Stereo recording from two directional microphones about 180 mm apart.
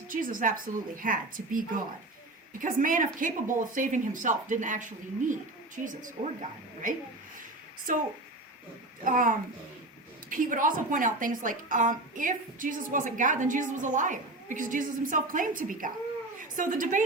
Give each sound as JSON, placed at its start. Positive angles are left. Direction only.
{"t": 0.1, "sound": "a woman's voice", "side_deg": -50}
{"t": 7.9, "sound": "a woman's voice", "side_deg": -45}
{"t": 9.0, "sound": "a woman's voice", "side_deg": -50}